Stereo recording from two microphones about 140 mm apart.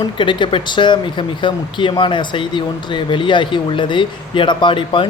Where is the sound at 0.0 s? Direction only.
35° left (ahead or behind).